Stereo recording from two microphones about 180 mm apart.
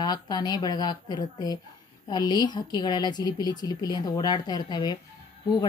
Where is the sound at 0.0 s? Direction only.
20° left (ahead or behind).